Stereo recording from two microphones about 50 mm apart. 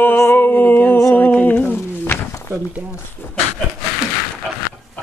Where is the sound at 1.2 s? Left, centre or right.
Left.